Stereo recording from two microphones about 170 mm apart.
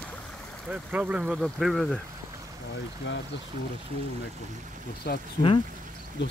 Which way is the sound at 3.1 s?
90° left.